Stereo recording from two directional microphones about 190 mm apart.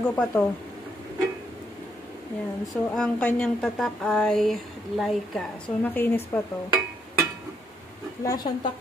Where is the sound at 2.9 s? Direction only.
5° left (ahead or behind).